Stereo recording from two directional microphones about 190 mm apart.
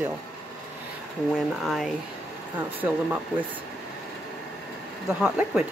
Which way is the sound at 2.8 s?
10° right (ahead or behind).